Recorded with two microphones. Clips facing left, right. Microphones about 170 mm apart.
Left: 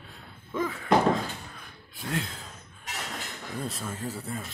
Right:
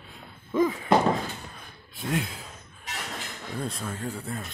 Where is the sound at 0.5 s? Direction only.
15° right (ahead or behind).